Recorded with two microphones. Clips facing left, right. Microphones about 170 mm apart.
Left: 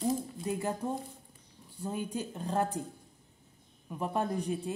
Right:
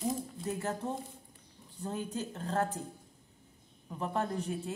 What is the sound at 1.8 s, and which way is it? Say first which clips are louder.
Speech: left 1 dB; 10° left (ahead or behind).